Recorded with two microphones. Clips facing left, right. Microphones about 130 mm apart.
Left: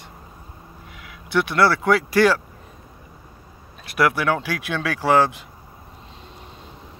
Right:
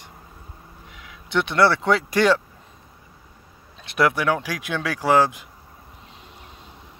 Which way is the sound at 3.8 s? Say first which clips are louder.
Even; 20° right (ahead or behind).